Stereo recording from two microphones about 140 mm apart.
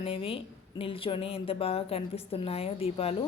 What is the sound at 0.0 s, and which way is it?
Speech, 40° left (ahead or behind).